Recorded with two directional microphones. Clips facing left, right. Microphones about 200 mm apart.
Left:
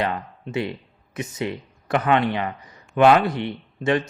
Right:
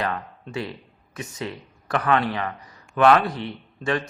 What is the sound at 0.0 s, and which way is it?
Speech, 25° left (ahead or behind).